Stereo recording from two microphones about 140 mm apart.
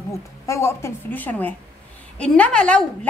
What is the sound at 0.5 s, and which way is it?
A woman's voice, 20° left (ahead or behind).